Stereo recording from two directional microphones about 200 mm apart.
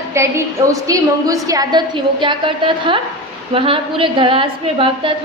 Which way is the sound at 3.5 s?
25° right (ahead or behind).